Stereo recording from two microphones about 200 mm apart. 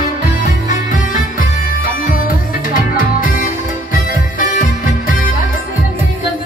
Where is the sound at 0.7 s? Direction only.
40° left (ahead or behind).